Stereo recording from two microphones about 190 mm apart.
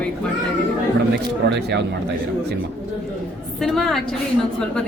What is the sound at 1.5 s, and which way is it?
Speech, 65° right (ahead or behind).